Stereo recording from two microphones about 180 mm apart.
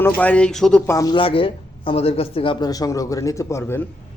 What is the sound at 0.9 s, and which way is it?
Speech, 20° left (ahead or behind).